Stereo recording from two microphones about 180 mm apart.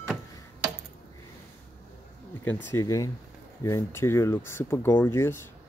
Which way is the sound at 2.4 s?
15° left (ahead or behind).